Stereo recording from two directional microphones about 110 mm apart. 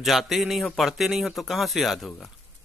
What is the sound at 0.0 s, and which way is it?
Speech, centre (ahead or behind).